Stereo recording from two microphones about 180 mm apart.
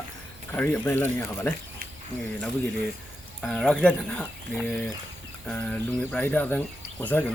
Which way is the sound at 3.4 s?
Centre (ahead or behind).